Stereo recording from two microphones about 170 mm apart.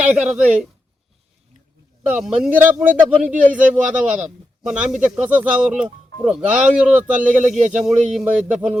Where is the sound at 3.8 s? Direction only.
50° right (ahead or behind).